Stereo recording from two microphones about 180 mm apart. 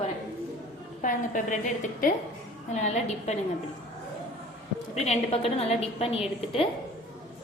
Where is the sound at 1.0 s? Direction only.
45° left (ahead or behind).